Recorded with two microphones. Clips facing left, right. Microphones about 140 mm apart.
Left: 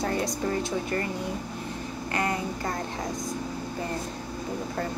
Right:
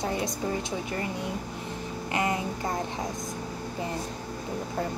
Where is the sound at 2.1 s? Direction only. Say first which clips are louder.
Right 1 dB; 20° right (ahead or behind).